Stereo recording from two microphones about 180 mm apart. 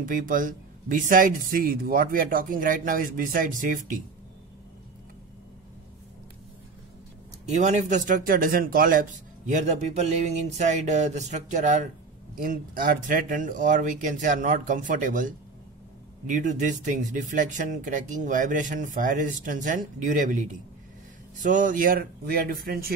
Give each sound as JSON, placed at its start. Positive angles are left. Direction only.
{"t": 0.0, "sound": "speech", "side_deg": -50}
{"t": 7.4, "sound": "speech", "side_deg": -40}
{"t": 12.4, "sound": "speech", "side_deg": -50}